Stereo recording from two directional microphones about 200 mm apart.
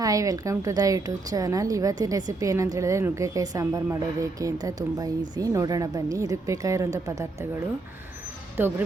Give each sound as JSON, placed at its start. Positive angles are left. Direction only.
{"t": 0.0, "sound": "a woman's voice", "side_deg": -15}
{"t": 8.6, "sound": "a woman's voice", "side_deg": -10}